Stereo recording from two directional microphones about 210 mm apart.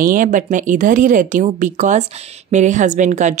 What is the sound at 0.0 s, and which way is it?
Speech, 40° right (ahead or behind).